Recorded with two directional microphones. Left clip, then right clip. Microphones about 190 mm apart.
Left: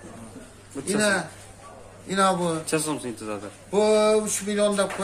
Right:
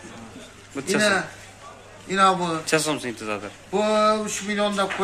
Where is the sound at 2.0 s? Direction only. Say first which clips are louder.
Right 3 dB; 55° left (ahead or behind).